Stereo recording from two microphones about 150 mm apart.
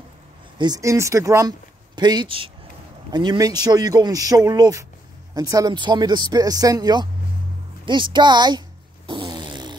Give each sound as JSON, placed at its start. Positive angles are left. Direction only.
{"t": 0.6, "sound": "speech", "side_deg": -25}
{"t": 7.8, "sound": "fart", "side_deg": -30}